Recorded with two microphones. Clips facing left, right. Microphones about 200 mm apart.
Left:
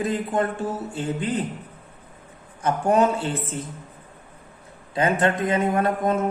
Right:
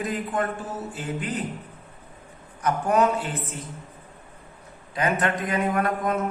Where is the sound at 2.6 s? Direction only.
30° left (ahead or behind).